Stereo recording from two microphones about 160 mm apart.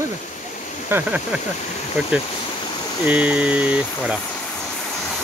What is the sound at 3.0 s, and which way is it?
Speech, 10° right (ahead or behind).